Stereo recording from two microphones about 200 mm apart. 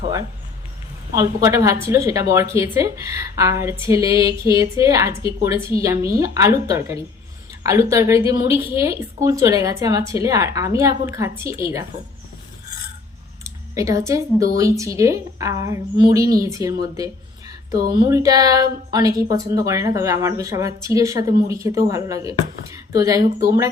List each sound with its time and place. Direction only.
1.1 s a woman's voice: 15° right (ahead or behind)
13.4 s a woman's voice: 15° right (ahead or behind)